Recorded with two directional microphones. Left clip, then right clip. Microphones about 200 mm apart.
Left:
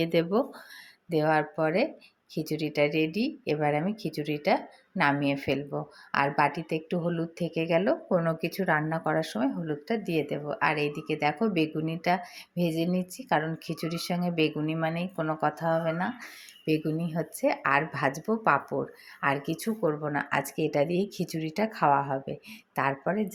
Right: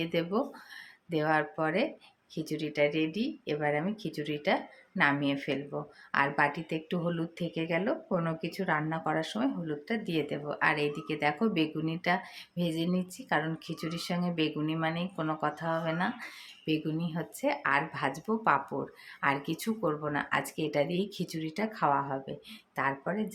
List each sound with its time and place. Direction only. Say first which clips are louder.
0.0 s speech: left 5 dB; 20° left (ahead or behind)